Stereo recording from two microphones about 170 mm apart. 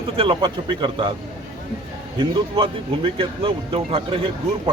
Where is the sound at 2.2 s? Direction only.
30° right (ahead or behind).